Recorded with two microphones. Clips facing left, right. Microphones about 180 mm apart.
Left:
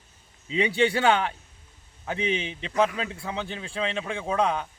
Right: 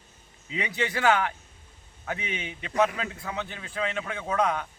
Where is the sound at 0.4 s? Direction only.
30° left (ahead or behind).